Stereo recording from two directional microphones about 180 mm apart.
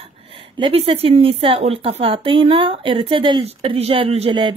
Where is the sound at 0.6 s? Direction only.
30° right (ahead or behind).